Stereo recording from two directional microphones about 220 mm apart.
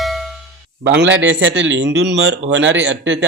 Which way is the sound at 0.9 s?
55° right (ahead or behind).